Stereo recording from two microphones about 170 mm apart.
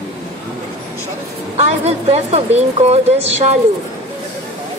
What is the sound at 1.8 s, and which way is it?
Speech, 40° right (ahead or behind).